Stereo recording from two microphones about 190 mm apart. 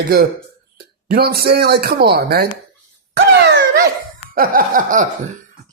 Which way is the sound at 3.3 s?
65° right (ahead or behind).